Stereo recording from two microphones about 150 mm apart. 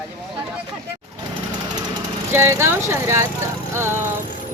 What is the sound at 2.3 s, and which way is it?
Speech, 15° right (ahead or behind).